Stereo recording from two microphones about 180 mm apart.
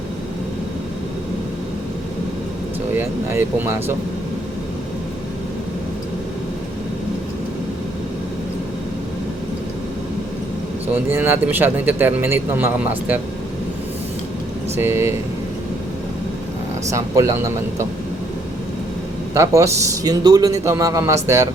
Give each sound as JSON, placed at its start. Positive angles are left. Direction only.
{"t": 2.9, "sound": "a man's voice", "side_deg": -15}
{"t": 11.1, "sound": "a man's voice", "side_deg": -10}
{"t": 14.8, "sound": "a man's voice", "side_deg": -15}
{"t": 16.9, "sound": "a man's voice", "side_deg": -15}
{"t": 19.3, "sound": "a man's voice", "side_deg": -15}